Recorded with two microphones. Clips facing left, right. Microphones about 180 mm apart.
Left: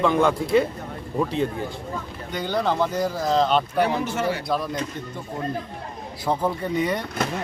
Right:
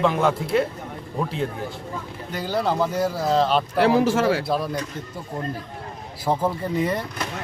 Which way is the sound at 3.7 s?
90° right.